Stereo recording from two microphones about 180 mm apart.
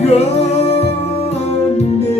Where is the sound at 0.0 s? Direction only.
35° left (ahead or behind).